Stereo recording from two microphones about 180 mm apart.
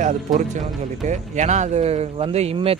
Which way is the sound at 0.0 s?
40° right (ahead or behind).